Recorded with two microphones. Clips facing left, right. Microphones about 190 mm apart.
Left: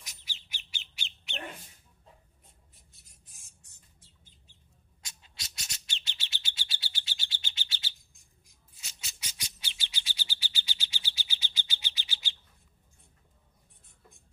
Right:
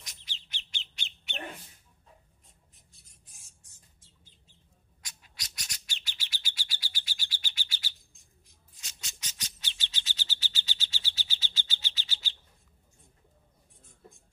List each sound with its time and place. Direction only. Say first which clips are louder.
0.0 s bird: right 1 dB; 10° left (ahead or behind)
3.4 s music: even; 60° left (ahead or behind)
5.0 s bird: even; 25° left (ahead or behind)
8.7 s bird: even; 10° left (ahead or behind)